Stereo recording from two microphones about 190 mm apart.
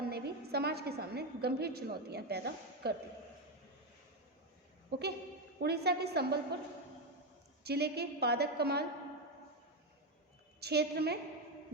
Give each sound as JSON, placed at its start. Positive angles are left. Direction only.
{"t": 0.1, "sound": "a woman's voice", "side_deg": -55}
{"t": 4.9, "sound": "a woman's voice", "side_deg": -60}
{"t": 7.6, "sound": "a woman's voice", "side_deg": -60}
{"t": 10.6, "sound": "a woman's voice", "side_deg": -60}